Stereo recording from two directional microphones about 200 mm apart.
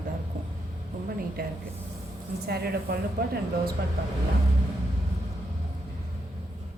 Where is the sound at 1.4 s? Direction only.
45° right (ahead or behind).